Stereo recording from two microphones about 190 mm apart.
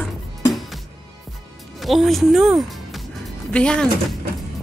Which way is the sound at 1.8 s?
Centre (ahead or behind).